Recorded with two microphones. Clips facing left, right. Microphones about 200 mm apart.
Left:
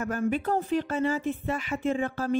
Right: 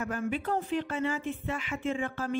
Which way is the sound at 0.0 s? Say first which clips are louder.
Left 4 dB; 40° left (ahead or behind).